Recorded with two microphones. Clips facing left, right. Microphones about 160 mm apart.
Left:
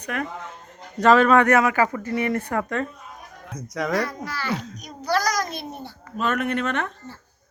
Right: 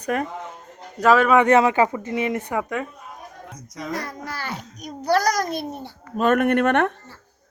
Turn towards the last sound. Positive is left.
turn(degrees=-60)  # may be behind; listen again after turning